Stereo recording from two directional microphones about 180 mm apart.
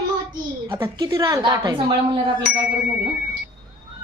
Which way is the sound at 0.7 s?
20° right (ahead or behind).